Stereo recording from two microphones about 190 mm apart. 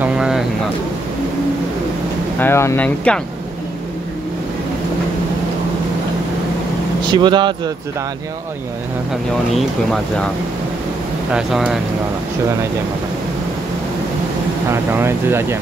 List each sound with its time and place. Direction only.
0.0 s a sound: 5° right (ahead or behind)
2.4 s speech: 15° left (ahead or behind)
7.1 s speech: 25° right (ahead or behind)
9.5 s speech: centre (ahead or behind)
11.3 s speech: 5° right (ahead or behind)
14.7 s speech: 10° right (ahead or behind)